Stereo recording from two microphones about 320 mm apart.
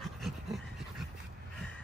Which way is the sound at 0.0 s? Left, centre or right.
Centre.